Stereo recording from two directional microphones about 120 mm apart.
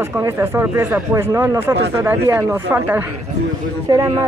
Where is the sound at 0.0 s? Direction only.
25° right (ahead or behind).